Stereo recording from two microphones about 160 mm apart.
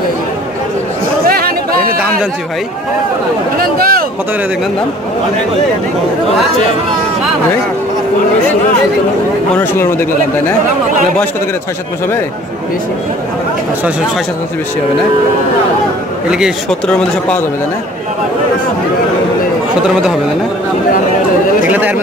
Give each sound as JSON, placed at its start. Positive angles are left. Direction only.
{"t": 1.2, "sound": "chatter", "side_deg": -70}
{"t": 3.6, "sound": "speech", "side_deg": -70}
{"t": 9.6, "sound": "speech", "side_deg": 15}
{"t": 16.3, "sound": "a man's voice", "side_deg": -5}
{"t": 21.6, "sound": "speech", "side_deg": -10}